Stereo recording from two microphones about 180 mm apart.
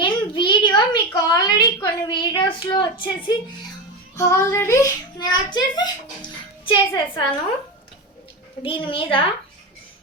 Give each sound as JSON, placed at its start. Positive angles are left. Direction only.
{"t": 0.0, "sound": "a child's voice", "side_deg": 25}
{"t": 4.2, "sound": "a child's voice", "side_deg": 15}
{"t": 8.6, "sound": "a woman's voice", "side_deg": 30}